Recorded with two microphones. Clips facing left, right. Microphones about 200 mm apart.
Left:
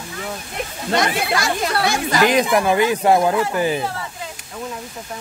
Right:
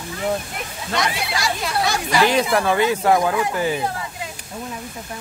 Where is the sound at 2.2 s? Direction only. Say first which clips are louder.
Left 3 dB; 15° left (ahead or behind).